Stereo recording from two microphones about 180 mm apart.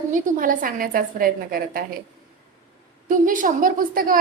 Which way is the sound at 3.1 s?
50° right (ahead or behind).